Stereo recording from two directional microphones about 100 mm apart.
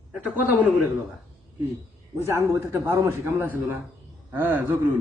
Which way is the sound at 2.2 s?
30° right (ahead or behind).